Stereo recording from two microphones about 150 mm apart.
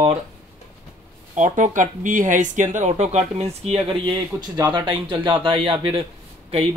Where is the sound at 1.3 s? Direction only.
55° right (ahead or behind).